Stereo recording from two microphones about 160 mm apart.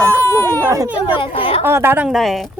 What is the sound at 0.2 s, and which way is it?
Baby cry, 15° left (ahead or behind).